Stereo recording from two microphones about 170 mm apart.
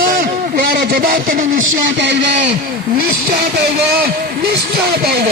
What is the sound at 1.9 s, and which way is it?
Speech, 90° right.